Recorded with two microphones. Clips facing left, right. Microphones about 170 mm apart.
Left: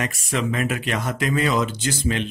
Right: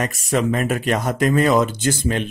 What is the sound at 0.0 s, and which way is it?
Speech, 45° right (ahead or behind).